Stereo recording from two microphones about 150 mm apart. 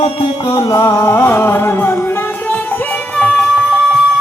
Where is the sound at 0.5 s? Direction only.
25° left (ahead or behind).